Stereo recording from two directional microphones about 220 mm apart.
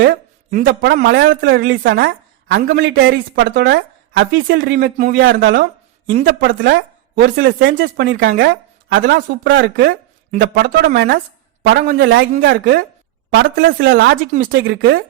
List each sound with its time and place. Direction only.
0.6 s a woman's voice: 50° right (ahead or behind)